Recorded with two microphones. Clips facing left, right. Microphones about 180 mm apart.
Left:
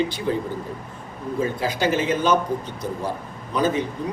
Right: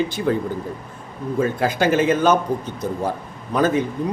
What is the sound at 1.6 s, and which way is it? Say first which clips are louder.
Speech: right 5 dB; 50° right (ahead or behind).